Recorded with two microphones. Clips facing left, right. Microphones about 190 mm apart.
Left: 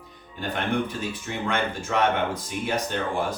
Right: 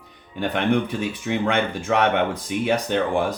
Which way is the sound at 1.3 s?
65° right (ahead or behind).